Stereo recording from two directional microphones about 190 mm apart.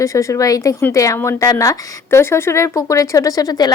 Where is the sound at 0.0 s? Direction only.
15° left (ahead or behind).